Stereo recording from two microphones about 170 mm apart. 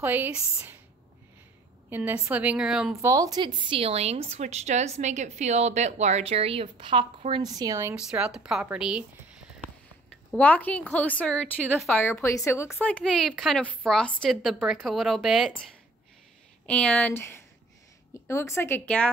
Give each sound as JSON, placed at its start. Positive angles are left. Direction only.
{"t": 0.0, "sound": "a woman's voice", "side_deg": -10}
{"t": 1.9, "sound": "a woman's voice", "side_deg": -10}
{"t": 3.1, "sound": "a woman's voice", "side_deg": -20}
{"t": 7.9, "sound": "a woman's voice", "side_deg": -5}
{"t": 10.3, "sound": "a woman's voice", "side_deg": 10}
{"t": 12.7, "sound": "a woman's voice", "side_deg": 5}